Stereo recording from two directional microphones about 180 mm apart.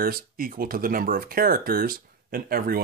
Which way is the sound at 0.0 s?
55° right (ahead or behind).